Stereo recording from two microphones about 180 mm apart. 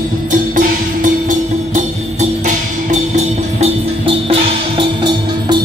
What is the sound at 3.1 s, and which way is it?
Music, 35° right (ahead or behind).